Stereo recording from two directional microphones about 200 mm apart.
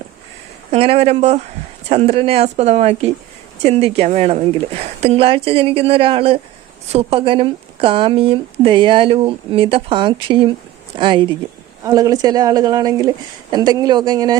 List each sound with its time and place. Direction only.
0.7 s speech: 30° right (ahead or behind)